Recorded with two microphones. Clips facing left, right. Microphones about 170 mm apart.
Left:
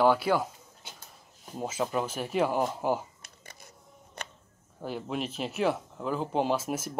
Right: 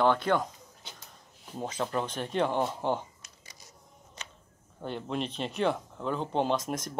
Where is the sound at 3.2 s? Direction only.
55° left (ahead or behind).